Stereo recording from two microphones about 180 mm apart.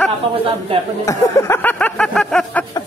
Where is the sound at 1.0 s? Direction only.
15° left (ahead or behind).